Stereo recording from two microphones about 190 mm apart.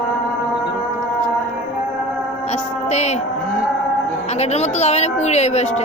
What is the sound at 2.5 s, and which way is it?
Music, 35° left (ahead or behind).